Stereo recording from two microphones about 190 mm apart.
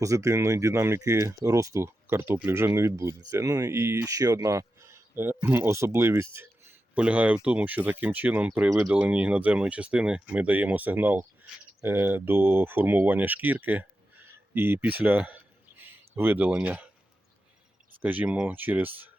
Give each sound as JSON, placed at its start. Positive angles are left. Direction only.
{"t": 0.0, "sound": "speech", "side_deg": -15}
{"t": 18.0, "sound": "speech", "side_deg": -10}